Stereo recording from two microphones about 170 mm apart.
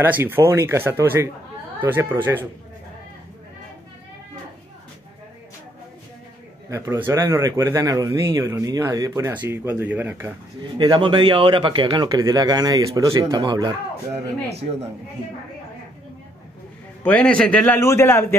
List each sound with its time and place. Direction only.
0.0 s speech: 10° right (ahead or behind)
6.7 s speech: 15° right (ahead or behind)
10.8 s a man's voice: 25° right (ahead or behind)
17.0 s a man's voice: 5° left (ahead or behind)